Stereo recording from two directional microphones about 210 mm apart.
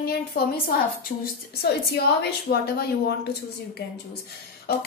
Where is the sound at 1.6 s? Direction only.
50° left (ahead or behind).